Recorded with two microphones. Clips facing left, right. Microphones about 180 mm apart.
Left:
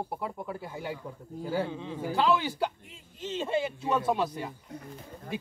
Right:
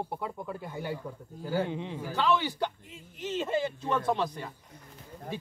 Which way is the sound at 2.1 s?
10° left (ahead or behind).